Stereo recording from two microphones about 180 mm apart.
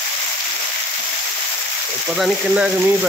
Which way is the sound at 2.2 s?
5° right (ahead or behind).